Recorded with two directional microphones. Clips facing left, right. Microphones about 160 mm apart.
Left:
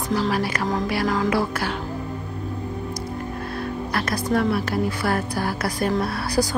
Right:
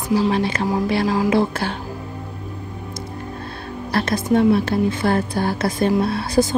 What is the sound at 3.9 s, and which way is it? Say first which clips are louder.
A woman's voice: right 6 dB; 25° right (ahead or behind).